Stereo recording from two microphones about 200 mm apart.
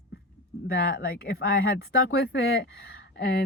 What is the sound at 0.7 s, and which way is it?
Speech, 50° left (ahead or behind).